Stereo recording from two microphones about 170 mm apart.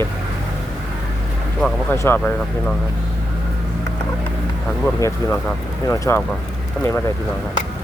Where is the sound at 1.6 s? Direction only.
5° left (ahead or behind).